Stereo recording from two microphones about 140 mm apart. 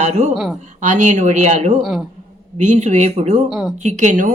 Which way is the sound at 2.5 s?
55° right (ahead or behind).